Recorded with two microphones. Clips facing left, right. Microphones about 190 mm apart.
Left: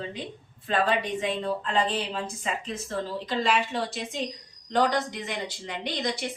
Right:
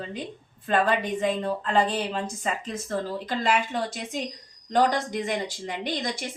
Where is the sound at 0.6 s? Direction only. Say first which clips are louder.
Right 2 dB; 45° right (ahead or behind).